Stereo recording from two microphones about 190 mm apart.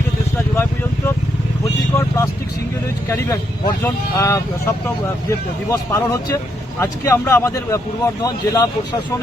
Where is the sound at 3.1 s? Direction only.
15° left (ahead or behind).